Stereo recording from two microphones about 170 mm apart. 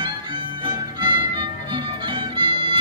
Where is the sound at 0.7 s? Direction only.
25° right (ahead or behind).